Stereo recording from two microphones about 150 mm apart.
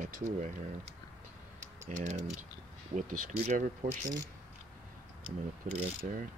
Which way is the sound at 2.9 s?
70° right (ahead or behind).